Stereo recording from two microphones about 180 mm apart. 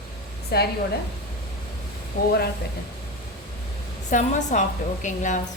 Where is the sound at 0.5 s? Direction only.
65° left (ahead or behind).